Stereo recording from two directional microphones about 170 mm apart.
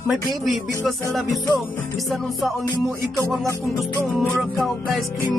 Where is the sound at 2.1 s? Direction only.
Centre (ahead or behind).